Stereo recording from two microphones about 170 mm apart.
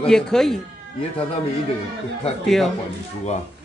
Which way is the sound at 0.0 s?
5° left (ahead or behind).